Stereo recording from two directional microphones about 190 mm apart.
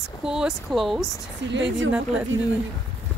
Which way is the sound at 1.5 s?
70° right (ahead or behind).